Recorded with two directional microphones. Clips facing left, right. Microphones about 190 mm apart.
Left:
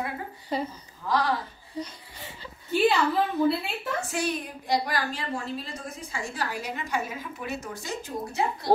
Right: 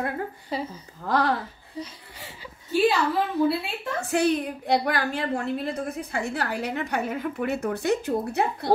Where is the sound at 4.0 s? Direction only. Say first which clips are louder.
Right 9 dB; 60° right (ahead or behind).